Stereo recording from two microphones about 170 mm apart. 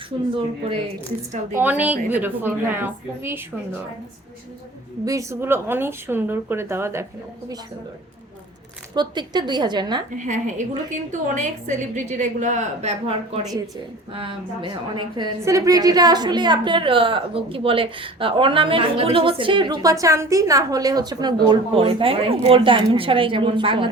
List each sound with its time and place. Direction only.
1.5 s speech: 10° right (ahead or behind)
5.0 s speech: 15° right (ahead or behind)
9.0 s a woman's voice: 25° right (ahead or behind)
10.2 s a woman's voice: 45° right (ahead or behind); by 23.9 s 30° right (ahead or behind)